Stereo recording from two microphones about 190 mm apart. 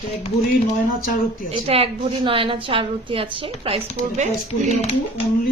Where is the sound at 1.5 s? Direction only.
30° right (ahead or behind).